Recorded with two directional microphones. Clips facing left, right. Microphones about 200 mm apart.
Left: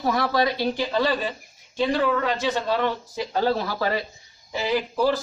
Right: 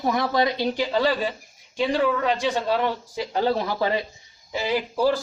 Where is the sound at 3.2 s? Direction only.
15° right (ahead or behind).